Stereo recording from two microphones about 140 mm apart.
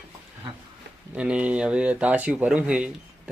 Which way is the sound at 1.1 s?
10° right (ahead or behind).